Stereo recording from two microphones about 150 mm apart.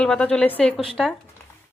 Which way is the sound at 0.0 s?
5° left (ahead or behind).